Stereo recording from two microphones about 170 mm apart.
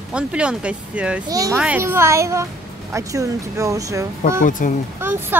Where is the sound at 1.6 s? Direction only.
10° right (ahead or behind).